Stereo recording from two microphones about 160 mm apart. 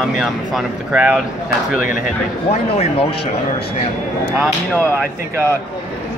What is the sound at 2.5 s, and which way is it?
Speech, 40° left (ahead or behind).